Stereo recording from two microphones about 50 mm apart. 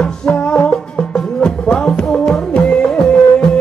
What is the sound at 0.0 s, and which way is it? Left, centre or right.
Music, centre.